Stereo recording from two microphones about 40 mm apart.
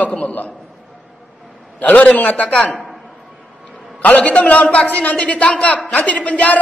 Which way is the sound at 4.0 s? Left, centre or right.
Left.